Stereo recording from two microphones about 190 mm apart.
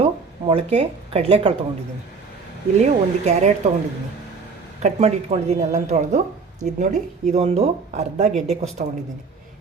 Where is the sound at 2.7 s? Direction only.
40° right (ahead or behind).